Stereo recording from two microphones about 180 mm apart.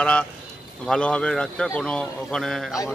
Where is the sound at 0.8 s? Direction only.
5° left (ahead or behind).